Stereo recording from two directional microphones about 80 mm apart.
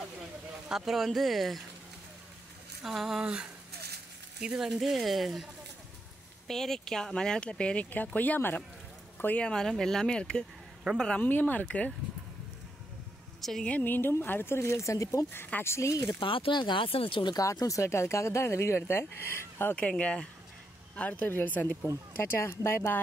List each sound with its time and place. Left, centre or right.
0.7 s speech: centre
2.8 s speech: centre
11.2 s speech: left
13.4 s a woman's voice: centre
13.7 s speech: left
15.3 s speech: left
16.1 s speech: left
17.4 s speech: left
19.7 s speech: centre